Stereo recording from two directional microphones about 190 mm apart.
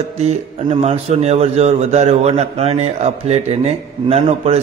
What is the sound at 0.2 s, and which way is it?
A man's voice, 35° right (ahead or behind).